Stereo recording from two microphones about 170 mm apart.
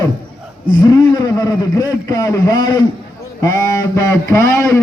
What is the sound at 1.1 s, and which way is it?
A man's voice, 20° left (ahead or behind).